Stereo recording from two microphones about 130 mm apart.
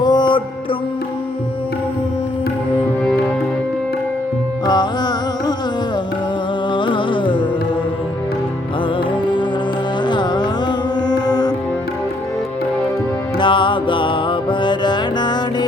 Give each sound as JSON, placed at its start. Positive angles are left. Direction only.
{"t": 0.0, "sound": "music", "side_deg": 35}
{"t": 4.6, "sound": "music", "side_deg": 35}
{"t": 6.7, "sound": "music", "side_deg": 40}
{"t": 10.1, "sound": "music", "side_deg": 35}
{"t": 13.4, "sound": "music", "side_deg": 40}